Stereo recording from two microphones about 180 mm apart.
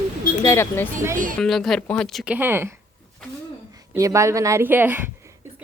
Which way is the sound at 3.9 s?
15° right (ahead or behind).